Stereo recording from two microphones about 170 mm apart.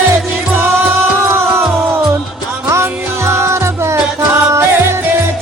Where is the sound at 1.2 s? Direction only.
15° right (ahead or behind).